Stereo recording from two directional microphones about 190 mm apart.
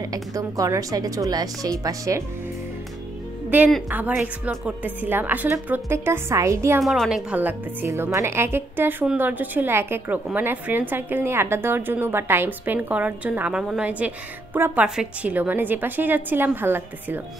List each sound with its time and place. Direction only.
0.0 s a woman's voice: 20° right (ahead or behind)
3.4 s a woman's voice: 5° right (ahead or behind)
6.8 s a woman's voice: centre (ahead or behind)